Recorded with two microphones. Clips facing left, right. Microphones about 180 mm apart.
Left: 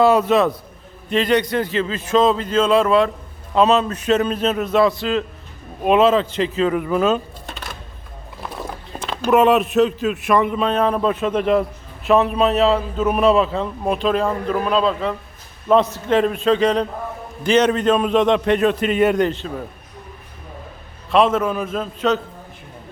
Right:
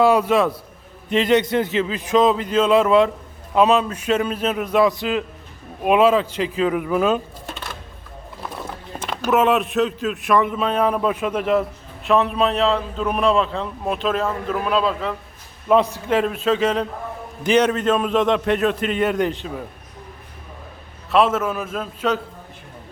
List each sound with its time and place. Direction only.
0.0 s speech: 10° right (ahead or behind)
1.1 s speech: 20° right (ahead or behind)
9.3 s a man's voice: centre (ahead or behind)
19.2 s speech: 10° right (ahead or behind)
21.1 s a man's voice: 5° right (ahead or behind)